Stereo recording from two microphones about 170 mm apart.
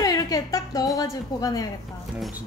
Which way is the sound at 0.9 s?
20° left (ahead or behind).